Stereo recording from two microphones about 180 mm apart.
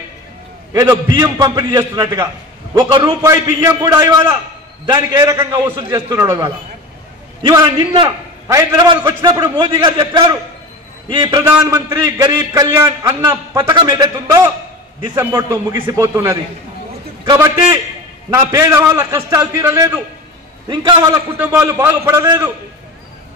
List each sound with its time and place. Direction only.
0.7 s a man's voice: 20° right (ahead or behind)
18.5 s a man's voice: 15° right (ahead or behind)